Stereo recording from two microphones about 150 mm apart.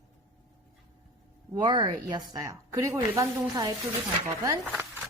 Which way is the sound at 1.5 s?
30° right (ahead or behind).